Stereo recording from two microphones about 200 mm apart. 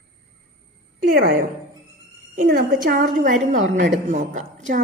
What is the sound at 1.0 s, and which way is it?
A woman's voice, 50° right (ahead or behind).